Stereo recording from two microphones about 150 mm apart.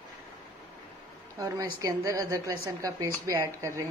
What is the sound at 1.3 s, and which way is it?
A woman's voice, 20° right (ahead or behind).